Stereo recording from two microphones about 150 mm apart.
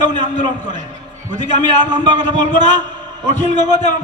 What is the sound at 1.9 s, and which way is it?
Speech, 30° right (ahead or behind).